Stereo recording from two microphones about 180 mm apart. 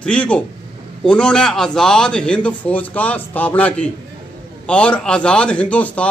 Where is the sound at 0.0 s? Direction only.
5° left (ahead or behind).